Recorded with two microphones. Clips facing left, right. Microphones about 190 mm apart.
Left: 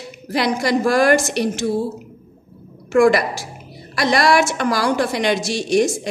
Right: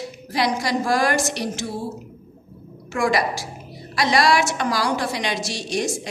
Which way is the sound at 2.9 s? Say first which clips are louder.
Left 7 dB; 55° left (ahead or behind).